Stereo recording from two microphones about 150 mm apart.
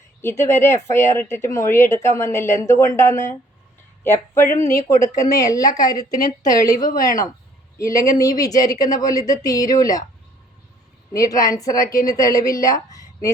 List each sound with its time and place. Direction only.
0.2 s speech: 15° left (ahead or behind)
6.7 s speech: 65° left (ahead or behind)
7.8 s speech: 20° left (ahead or behind)
11.1 s speech: 20° left (ahead or behind)